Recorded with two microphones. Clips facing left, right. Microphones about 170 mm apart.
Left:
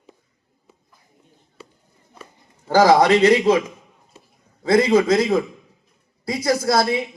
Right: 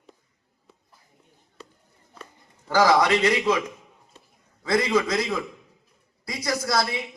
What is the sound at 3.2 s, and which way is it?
Speech, 25° left (ahead or behind).